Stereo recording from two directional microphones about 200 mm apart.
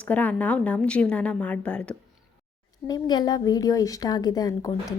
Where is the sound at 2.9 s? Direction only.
20° left (ahead or behind).